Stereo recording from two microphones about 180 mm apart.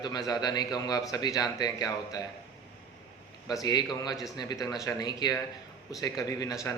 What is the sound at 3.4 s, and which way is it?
A man's voice, 20° left (ahead or behind).